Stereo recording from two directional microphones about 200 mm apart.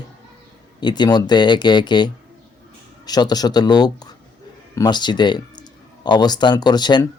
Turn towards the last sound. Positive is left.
turn(degrees=20)  # may be behind; listen again after turning